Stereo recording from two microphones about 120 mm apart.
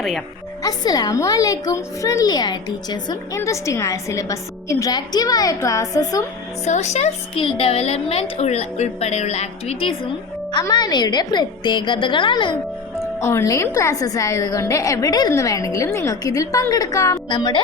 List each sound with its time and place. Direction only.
0.6 s a woman's voice: 35° left (ahead or behind)
3.3 s a woman's voice: 25° left (ahead or behind)
6.7 s speech: 70° left (ahead or behind)
7.3 s speech: 50° left (ahead or behind)
10.6 s a woman's voice: 35° left (ahead or behind)
13.1 s a woman's voice: 25° left (ahead or behind)
17.2 s a woman's voice: 40° left (ahead or behind)